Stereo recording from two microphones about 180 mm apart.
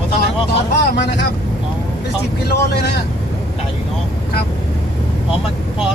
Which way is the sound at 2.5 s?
65° left (ahead or behind).